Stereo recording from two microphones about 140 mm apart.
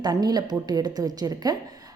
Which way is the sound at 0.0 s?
30° right (ahead or behind).